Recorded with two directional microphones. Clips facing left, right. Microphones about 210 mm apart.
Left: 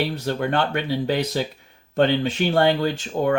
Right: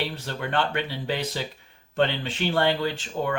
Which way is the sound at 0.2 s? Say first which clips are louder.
Left 5 dB; 40° left (ahead or behind).